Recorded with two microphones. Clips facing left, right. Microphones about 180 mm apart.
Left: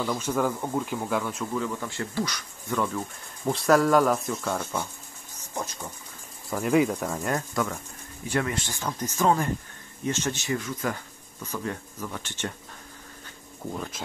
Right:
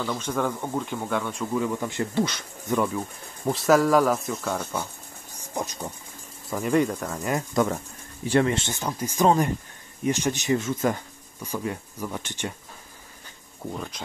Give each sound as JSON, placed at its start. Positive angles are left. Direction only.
{"t": 0.0, "sound": "speech", "side_deg": 5}
{"t": 1.5, "sound": "speech", "side_deg": -15}
{"t": 3.4, "sound": "speech", "side_deg": 0}
{"t": 5.4, "sound": "a sound", "side_deg": -15}
{"t": 6.5, "sound": "speech", "side_deg": 0}
{"t": 7.6, "sound": "speech", "side_deg": -20}
{"t": 8.8, "sound": "speech", "side_deg": -10}
{"t": 11.4, "sound": "speech", "side_deg": -10}
{"t": 13.7, "sound": "speech", "side_deg": 0}